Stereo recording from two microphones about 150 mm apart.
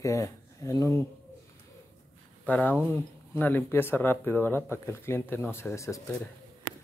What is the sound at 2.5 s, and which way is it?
Speech, 10° left (ahead or behind).